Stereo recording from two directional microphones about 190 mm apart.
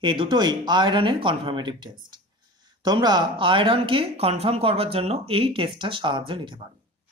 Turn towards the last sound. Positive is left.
turn(degrees=-25)  # may be behind; listen again after turning